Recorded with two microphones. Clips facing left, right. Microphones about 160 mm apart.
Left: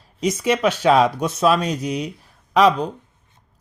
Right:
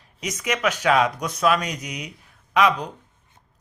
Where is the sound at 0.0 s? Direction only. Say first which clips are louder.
Left 9 dB; 30° left (ahead or behind).